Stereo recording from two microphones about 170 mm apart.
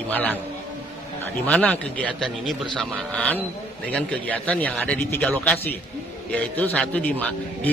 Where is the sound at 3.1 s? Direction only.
10° left (ahead or behind).